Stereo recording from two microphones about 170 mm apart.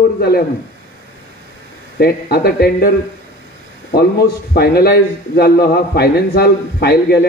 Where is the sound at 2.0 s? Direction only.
70° left (ahead or behind).